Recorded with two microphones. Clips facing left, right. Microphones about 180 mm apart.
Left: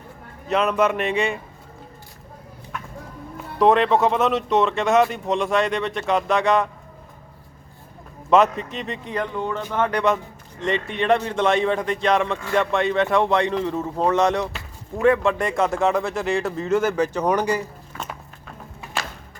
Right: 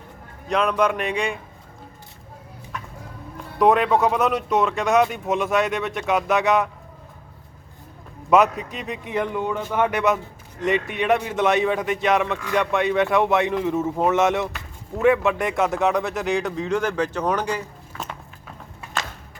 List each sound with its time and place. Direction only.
0.4 s speech: 5° left (ahead or behind)
3.6 s speech: centre (ahead or behind)
8.3 s speech: centre (ahead or behind)
9.0 s speech: 15° right (ahead or behind); by 17.7 s 10° left (ahead or behind)
17.9 s walk: centre (ahead or behind)